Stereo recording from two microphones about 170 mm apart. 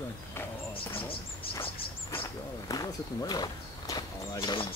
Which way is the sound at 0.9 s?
30° left (ahead or behind).